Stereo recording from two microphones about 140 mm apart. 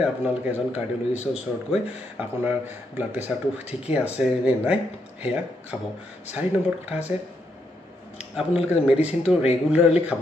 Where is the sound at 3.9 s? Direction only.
10° right (ahead or behind).